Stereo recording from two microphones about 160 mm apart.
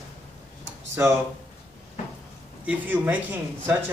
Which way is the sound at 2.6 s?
10° right (ahead or behind).